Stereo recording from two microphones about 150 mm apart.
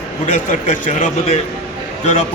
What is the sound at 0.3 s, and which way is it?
A man's voice, 55° left (ahead or behind).